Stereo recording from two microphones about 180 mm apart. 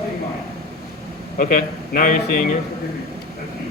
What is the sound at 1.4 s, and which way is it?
Speech, 50° left (ahead or behind).